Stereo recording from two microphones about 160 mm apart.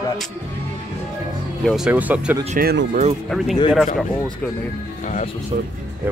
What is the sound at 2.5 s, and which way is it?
Speech, 75° right (ahead or behind).